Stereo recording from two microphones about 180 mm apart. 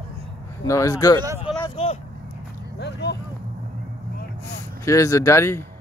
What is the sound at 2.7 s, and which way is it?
Speech, 70° left (ahead or behind).